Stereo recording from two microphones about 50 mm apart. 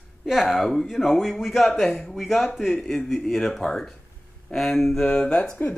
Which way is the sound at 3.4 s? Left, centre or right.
Centre.